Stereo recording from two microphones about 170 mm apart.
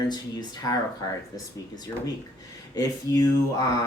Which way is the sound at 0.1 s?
25° left (ahead or behind).